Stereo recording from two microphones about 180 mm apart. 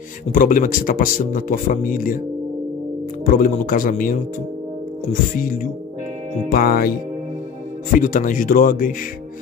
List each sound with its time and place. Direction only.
0.3 s speech: 50° left (ahead or behind)
3.3 s speech: 45° left (ahead or behind)
5.4 s speech: 50° left (ahead or behind)
8.0 s speech: 50° left (ahead or behind)